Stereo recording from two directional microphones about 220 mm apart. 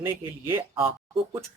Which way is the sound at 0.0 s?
10° right (ahead or behind).